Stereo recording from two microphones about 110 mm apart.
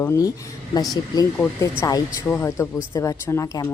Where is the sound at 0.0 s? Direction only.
35° left (ahead or behind).